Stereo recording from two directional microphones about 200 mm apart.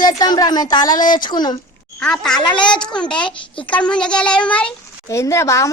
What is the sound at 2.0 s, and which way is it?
A woman's voice, 5° left (ahead or behind).